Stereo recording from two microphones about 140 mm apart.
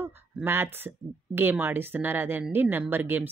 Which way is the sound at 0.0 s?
15° right (ahead or behind).